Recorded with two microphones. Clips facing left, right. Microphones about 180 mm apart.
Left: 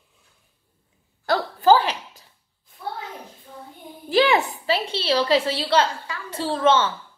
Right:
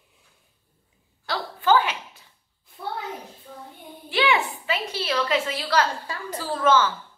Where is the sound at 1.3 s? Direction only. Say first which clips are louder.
Left 7 dB; 50° left (ahead or behind).